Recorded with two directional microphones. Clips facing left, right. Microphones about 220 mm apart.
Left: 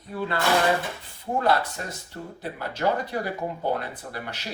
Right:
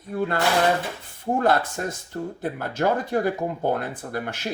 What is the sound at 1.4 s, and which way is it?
Speech, 50° right (ahead or behind).